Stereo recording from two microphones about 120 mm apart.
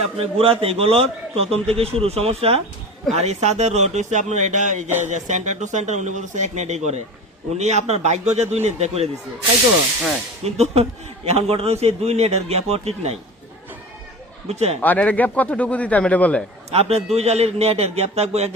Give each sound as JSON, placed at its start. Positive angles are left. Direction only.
{"t": 0.0, "sound": "a man's voice", "side_deg": -55}
{"t": 10.4, "sound": "a man's voice", "side_deg": -60}
{"t": 14.4, "sound": "a man's voice", "side_deg": -60}
{"t": 14.8, "sound": "speech", "side_deg": 15}
{"t": 16.7, "sound": "a man's voice", "side_deg": -60}